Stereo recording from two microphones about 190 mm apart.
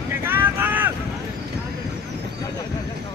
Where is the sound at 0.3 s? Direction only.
10° right (ahead or behind).